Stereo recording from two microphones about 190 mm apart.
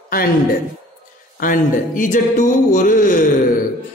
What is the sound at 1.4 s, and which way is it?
A man's voice, 45° left (ahead or behind).